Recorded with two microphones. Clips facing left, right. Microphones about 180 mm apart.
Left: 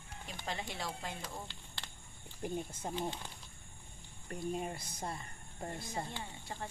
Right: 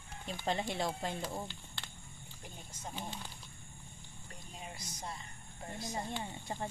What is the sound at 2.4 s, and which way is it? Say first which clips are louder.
Speech: left 10 dB; 55° left (ahead or behind).